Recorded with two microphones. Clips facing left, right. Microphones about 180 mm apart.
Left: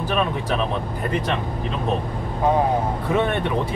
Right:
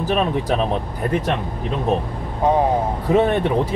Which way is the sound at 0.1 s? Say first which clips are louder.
Right 4 dB; 40° right (ahead or behind).